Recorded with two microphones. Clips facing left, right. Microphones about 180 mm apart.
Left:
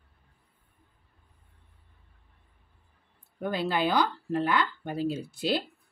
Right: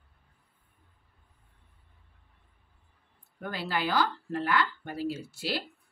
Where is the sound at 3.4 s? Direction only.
20° left (ahead or behind).